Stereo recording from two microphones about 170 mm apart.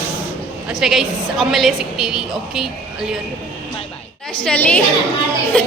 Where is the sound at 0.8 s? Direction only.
Centre (ahead or behind).